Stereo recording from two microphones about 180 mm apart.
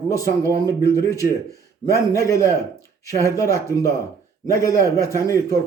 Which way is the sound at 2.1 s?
15° left (ahead or behind).